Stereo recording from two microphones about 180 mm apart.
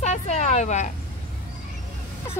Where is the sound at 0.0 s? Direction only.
40° left (ahead or behind).